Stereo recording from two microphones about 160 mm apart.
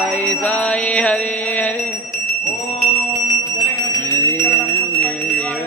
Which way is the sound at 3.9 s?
15° left (ahead or behind).